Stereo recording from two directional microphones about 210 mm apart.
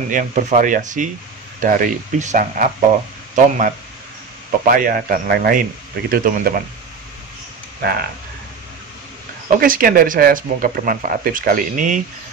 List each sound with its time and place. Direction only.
0.1 s speech: 35° right (ahead or behind)
7.8 s speech: 45° right (ahead or behind)
9.6 s speech: 45° right (ahead or behind)